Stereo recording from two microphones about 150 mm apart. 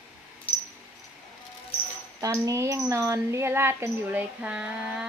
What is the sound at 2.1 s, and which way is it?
A woman's voice, 20° right (ahead or behind).